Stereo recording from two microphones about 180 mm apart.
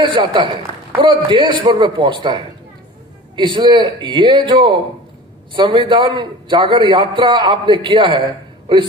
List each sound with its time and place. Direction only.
0.1 s a man's voice: 25° right (ahead or behind)